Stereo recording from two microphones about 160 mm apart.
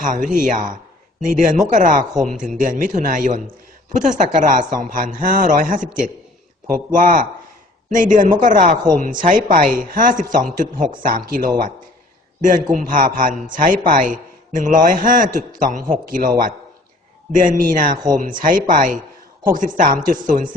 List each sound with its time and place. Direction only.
0.0 s a man's voice: 55° right (ahead or behind)